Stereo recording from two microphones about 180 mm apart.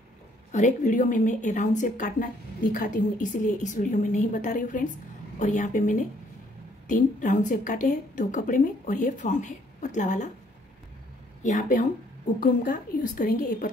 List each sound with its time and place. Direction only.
0.5 s a woman's voice: 45° left (ahead or behind)
11.4 s a woman's voice: 45° left (ahead or behind)